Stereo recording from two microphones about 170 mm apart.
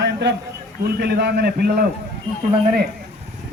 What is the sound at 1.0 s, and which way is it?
Speech, 75° right (ahead or behind).